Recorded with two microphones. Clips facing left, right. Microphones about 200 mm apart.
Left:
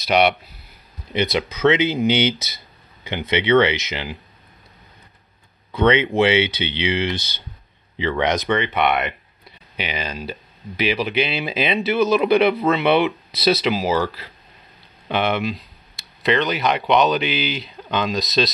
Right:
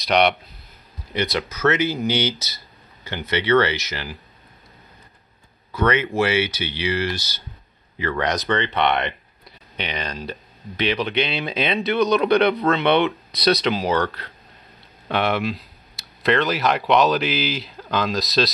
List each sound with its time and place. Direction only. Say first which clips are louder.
0.0 s speech: left 1 dB; 5° left (ahead or behind)
1.1 s speech: left 3 dB; 20° left (ahead or behind)
5.7 s speech: left 4 dB; 25° left (ahead or behind)
8.5 s speech: left 1 dB; 10° left (ahead or behind)